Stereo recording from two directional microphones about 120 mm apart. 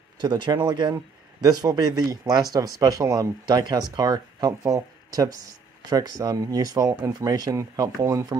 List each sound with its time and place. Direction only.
0.2 s speech: 40° right (ahead or behind)